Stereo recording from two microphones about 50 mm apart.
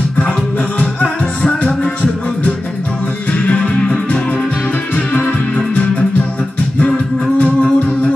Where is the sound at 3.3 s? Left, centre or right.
Left.